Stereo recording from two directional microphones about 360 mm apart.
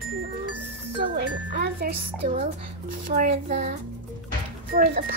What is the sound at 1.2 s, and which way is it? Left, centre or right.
Wind chime, right.